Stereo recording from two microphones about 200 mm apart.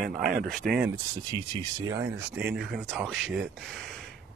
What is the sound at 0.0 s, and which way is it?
Speech, 40° right (ahead or behind).